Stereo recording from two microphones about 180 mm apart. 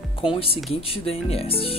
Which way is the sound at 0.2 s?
30° left (ahead or behind).